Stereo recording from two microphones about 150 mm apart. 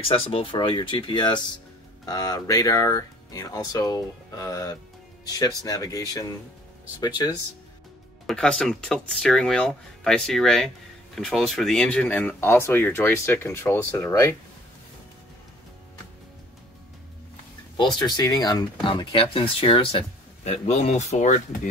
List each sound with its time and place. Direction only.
0.1 s speech: 35° left (ahead or behind)
8.3 s speech: 5° left (ahead or behind)
17.7 s speech: 30° left (ahead or behind); by 21.5 s 55° left (ahead or behind)